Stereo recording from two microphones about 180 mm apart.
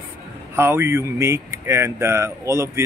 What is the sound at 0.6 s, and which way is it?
Speech, 15° right (ahead or behind).